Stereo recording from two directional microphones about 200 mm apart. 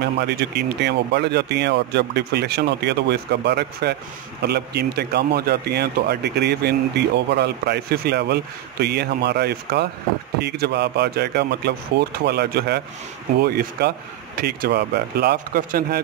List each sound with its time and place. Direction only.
0.0 s speech: 55° right (ahead or behind)